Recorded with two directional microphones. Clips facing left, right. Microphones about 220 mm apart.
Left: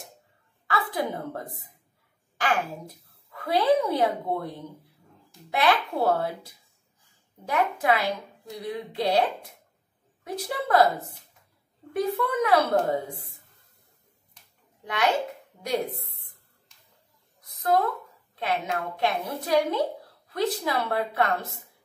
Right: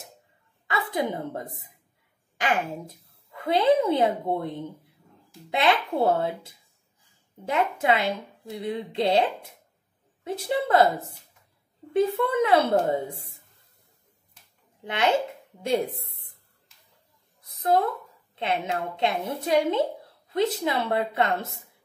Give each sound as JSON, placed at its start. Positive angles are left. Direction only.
{"t": 0.7, "sound": "a woman's voice", "side_deg": -20}
{"t": 15.6, "sound": "a woman's voice", "side_deg": -25}
{"t": 17.5, "sound": "a sound", "side_deg": -25}
{"t": 18.3, "sound": "a woman's voice", "side_deg": -25}